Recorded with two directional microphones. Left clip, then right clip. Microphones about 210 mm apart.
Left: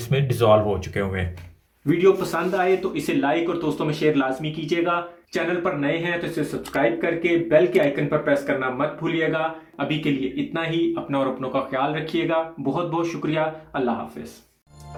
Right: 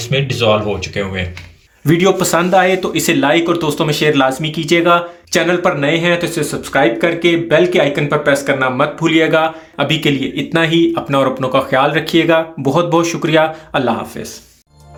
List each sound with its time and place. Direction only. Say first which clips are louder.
0.1 s speech: right 4 dB; 30° left (ahead or behind)
1.9 s speech: right 6 dB; 55° right (ahead or behind)